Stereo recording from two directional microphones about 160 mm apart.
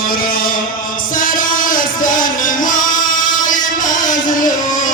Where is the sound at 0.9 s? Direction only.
55° left (ahead or behind).